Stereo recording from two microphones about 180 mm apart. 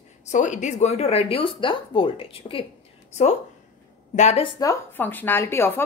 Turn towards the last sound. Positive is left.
turn(degrees=15)  # may be behind; listen again after turning